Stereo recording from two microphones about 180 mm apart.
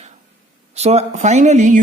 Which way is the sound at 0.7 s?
35° right (ahead or behind).